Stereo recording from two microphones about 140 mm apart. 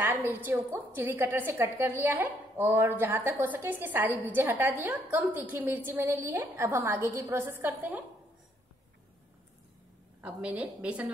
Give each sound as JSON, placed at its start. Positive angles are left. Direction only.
{"t": 0.0, "sound": "a woman's voice", "side_deg": -15}
{"t": 10.2, "sound": "a woman's voice", "side_deg": -10}